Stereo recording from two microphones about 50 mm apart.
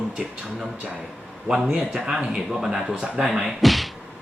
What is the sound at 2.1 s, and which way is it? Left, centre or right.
Speech, centre.